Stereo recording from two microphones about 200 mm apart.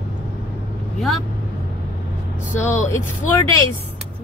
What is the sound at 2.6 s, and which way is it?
Speech, 35° left (ahead or behind).